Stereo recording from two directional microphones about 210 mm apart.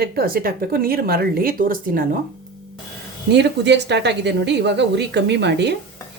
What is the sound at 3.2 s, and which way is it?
A woman's voice, 55° right (ahead or behind).